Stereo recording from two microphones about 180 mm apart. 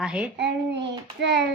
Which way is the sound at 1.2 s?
75° right (ahead or behind).